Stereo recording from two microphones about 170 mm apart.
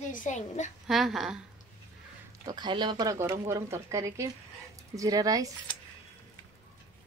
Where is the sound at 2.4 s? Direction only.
25° right (ahead or behind).